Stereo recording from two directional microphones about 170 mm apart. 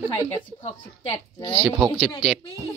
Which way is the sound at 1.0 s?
30° left (ahead or behind).